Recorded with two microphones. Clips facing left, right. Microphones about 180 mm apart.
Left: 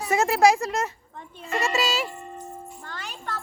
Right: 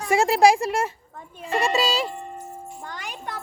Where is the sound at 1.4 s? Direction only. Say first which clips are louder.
Right 3 dB; 30° right (ahead or behind).